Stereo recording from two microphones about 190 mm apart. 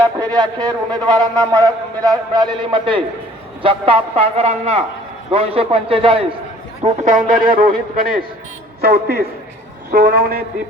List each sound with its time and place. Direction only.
0.0 s a man's voice: 5° left (ahead or behind)
0.3 s a man's voice: 20° right (ahead or behind)
6.8 s a man's voice: 45° right (ahead or behind)